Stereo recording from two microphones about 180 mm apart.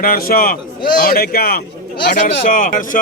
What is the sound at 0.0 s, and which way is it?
A man's voice, 55° left (ahead or behind).